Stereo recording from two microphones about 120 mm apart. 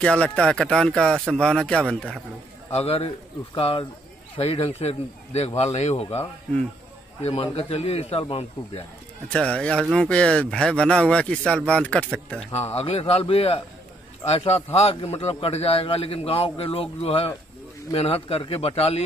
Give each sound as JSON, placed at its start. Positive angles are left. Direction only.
{"t": 0.0, "sound": "speech", "side_deg": 10}
{"t": 2.7, "sound": "a man's voice", "side_deg": 55}
{"t": 9.3, "sound": "speech", "side_deg": 10}
{"t": 12.5, "sound": "a man's voice", "side_deg": 55}